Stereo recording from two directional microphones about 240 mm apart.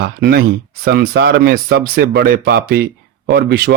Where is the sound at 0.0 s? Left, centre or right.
Right.